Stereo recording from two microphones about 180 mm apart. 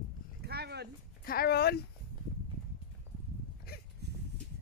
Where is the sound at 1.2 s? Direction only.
55° left (ahead or behind).